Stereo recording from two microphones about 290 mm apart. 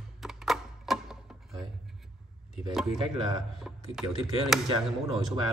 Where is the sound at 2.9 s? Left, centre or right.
Centre.